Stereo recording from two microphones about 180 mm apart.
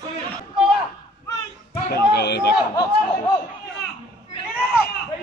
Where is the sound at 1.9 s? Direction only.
65° left (ahead or behind).